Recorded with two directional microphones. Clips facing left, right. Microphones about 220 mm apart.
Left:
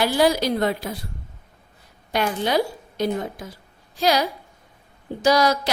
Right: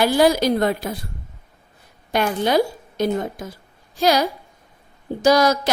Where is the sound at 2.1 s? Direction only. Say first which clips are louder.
Right 3 dB; 50° right (ahead or behind).